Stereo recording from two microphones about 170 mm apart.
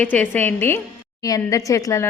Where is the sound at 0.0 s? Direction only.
10° left (ahead or behind).